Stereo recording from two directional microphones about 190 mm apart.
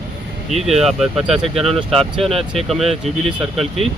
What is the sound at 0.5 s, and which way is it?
Speech, centre (ahead or behind).